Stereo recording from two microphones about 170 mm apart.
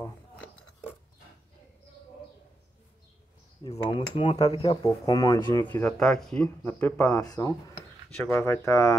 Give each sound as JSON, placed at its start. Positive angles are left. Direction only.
{"t": 3.6, "sound": "speech", "side_deg": 30}
{"t": 4.8, "sound": "speech", "side_deg": 20}
{"t": 7.2, "sound": "speech", "side_deg": 20}